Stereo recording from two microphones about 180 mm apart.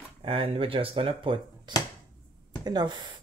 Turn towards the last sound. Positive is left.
turn(degrees=-25)  # may be behind; listen again after turning